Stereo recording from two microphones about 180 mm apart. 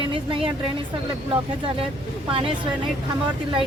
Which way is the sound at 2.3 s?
30° right (ahead or behind).